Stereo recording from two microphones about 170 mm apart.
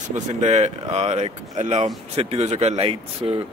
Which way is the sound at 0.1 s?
40° right (ahead or behind).